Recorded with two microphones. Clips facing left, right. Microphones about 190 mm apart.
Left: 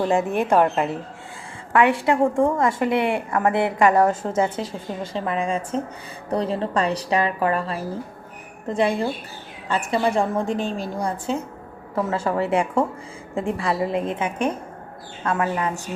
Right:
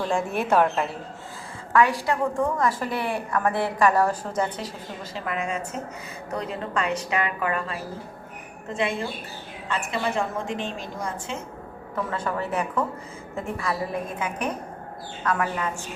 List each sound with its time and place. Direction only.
0.1 s a woman's voice: centre (ahead or behind)
0.3 s a woman's voice: 15° left (ahead or behind)
1.7 s a woman's voice: 25° left (ahead or behind)